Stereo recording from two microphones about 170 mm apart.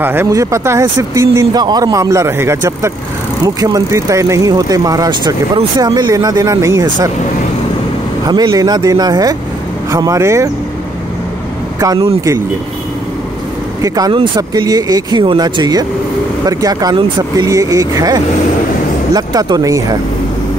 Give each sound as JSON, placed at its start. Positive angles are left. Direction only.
{"t": 0.0, "sound": "speech", "side_deg": -10}
{"t": 8.3, "sound": "speech", "side_deg": -25}
{"t": 11.8, "sound": "speech", "side_deg": -20}
{"t": 13.8, "sound": "speech", "side_deg": -20}